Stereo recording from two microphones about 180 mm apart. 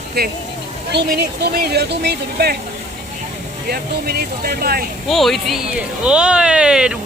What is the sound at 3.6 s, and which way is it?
Speech, 60° right (ahead or behind).